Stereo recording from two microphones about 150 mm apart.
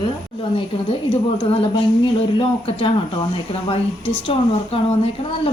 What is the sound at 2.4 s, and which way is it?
Speech, 35° left (ahead or behind).